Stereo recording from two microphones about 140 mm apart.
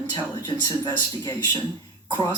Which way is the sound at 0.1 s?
30° left (ahead or behind).